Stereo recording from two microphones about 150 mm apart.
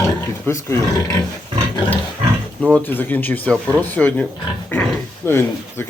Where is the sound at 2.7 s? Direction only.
10° left (ahead or behind).